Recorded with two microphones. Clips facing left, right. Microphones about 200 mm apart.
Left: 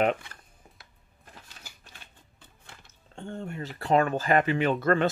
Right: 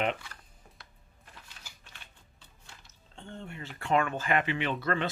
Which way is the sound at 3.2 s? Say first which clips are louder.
Left 7 dB; 45° left (ahead or behind).